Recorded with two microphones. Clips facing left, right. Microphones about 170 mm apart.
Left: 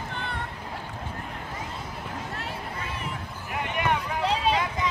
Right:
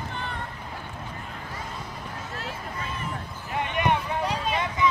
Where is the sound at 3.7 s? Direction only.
25° right (ahead or behind).